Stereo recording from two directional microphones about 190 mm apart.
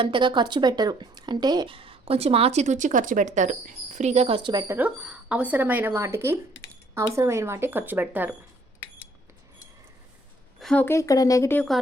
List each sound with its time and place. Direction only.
0.0 s speech: 25° right (ahead or behind)
4.7 s speech: 5° right (ahead or behind)
10.6 s speech: 5° left (ahead or behind)